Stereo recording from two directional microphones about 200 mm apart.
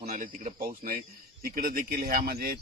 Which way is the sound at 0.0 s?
40° right (ahead or behind).